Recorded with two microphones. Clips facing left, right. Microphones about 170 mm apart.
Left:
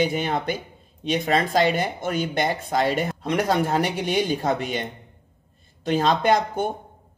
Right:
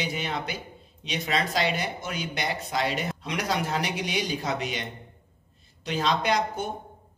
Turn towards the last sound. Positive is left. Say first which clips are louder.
# left 6 dB
turn(degrees=50)  # may be behind; listen again after turning